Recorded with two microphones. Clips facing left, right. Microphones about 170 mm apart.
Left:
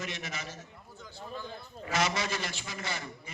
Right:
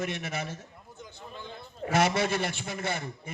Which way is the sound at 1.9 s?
55° right (ahead or behind).